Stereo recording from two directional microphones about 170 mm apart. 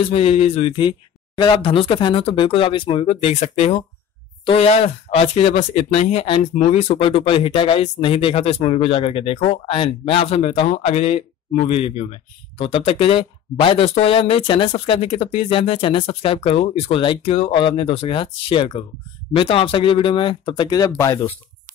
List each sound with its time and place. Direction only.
0.0 s speech: 35° left (ahead or behind); by 21.4 s 15° left (ahead or behind)